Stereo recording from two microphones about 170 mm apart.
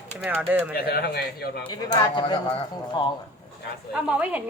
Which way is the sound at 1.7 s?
25° left (ahead or behind).